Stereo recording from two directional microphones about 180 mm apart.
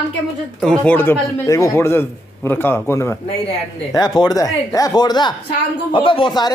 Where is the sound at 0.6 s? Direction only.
5° left (ahead or behind).